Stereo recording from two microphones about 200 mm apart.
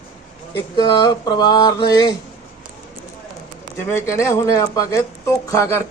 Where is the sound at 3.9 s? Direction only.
15° left (ahead or behind).